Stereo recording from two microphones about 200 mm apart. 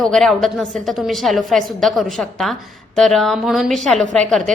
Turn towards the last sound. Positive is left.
turn(degrees=5)  # may be behind; listen again after turning